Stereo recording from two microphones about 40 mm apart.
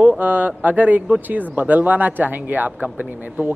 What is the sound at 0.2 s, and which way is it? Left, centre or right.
Speech, right.